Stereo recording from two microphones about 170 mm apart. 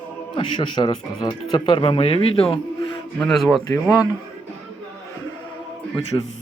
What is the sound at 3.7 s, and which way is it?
Speech, 20° left (ahead or behind).